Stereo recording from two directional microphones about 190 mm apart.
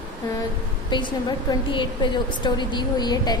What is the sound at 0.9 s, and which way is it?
A woman's voice, 25° left (ahead or behind).